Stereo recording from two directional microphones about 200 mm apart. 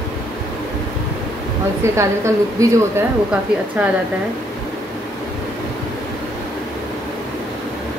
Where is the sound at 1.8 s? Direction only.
15° right (ahead or behind).